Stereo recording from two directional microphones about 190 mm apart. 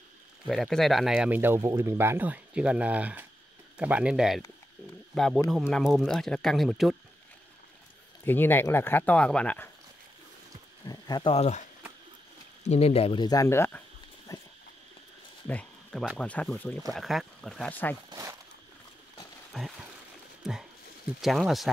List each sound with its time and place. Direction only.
0.5 s speech: centre (ahead or behind)
8.3 s speech: 10° left (ahead or behind)
10.9 s speech: 20° left (ahead or behind)
11.3 s speech: 35° left (ahead or behind)
12.6 s speech: 35° left (ahead or behind); by 14.4 s 15° left (ahead or behind)
15.4 s speech: 5° left (ahead or behind)
19.5 s a sound: centre (ahead or behind)
20.4 s speech: centre (ahead or behind)